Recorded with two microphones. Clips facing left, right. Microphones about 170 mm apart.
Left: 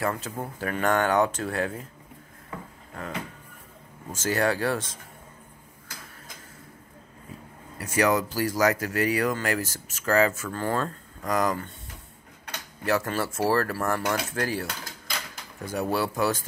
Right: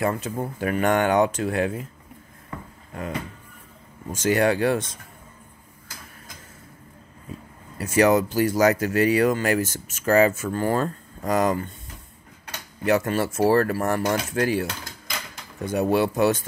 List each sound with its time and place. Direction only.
0.0 s speech: 15° right (ahead or behind)
4.2 s speech: 20° right (ahead or behind)
7.8 s speech: 25° right (ahead or behind)
12.8 s speech: 20° right (ahead or behind)